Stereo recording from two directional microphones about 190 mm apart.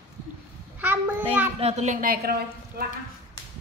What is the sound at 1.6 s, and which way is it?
A woman's voice, 35° right (ahead or behind).